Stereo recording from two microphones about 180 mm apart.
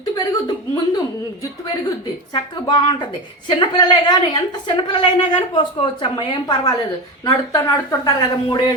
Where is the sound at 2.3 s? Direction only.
25° left (ahead or behind).